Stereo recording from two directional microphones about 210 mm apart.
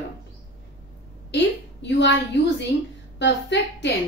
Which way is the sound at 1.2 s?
55° left (ahead or behind).